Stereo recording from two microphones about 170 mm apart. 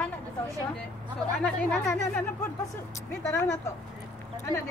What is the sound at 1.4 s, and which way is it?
Speech, 5° left (ahead or behind).